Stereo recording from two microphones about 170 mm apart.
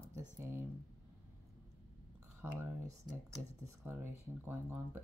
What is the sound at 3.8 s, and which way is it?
Speech, 15° right (ahead or behind).